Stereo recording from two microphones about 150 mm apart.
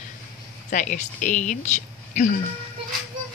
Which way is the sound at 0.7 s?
60° left (ahead or behind).